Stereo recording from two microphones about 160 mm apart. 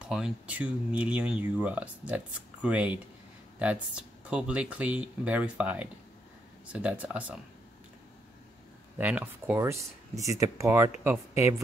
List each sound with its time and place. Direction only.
0.1 s speech: 5° right (ahead or behind)
8.9 s speech: 10° right (ahead or behind)